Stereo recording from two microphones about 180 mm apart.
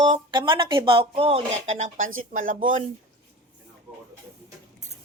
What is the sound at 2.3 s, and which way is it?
Speech, 50° right (ahead or behind).